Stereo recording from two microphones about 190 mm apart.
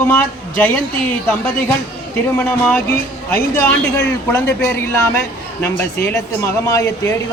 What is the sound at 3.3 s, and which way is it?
A woman's voice, 10° left (ahead or behind).